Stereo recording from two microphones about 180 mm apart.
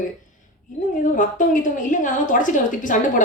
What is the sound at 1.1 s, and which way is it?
A woman's voice, 45° left (ahead or behind).